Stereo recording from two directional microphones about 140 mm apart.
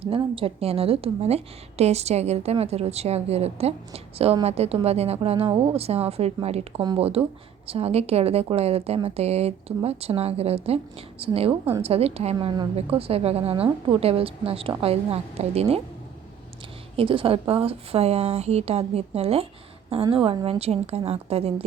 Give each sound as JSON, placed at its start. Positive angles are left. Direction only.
{"t": 0.3, "sound": "a woman's voice", "side_deg": -45}
{"t": 17.0, "sound": "a woman's voice", "side_deg": -40}